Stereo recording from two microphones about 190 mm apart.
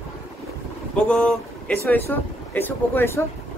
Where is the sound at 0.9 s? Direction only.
5° left (ahead or behind).